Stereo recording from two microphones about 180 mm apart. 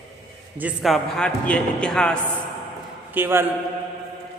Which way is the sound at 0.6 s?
Centre (ahead or behind).